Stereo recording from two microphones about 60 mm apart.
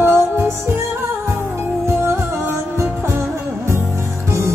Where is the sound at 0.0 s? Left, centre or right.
Right.